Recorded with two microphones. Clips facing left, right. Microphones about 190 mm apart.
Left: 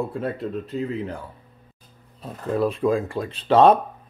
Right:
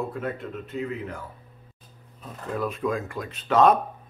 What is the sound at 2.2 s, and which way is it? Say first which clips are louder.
Speech: left 7 dB; 30° left (ahead or behind).